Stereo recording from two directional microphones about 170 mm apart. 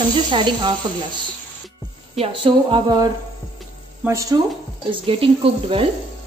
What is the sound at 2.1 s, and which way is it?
A woman's voice, 30° right (ahead or behind).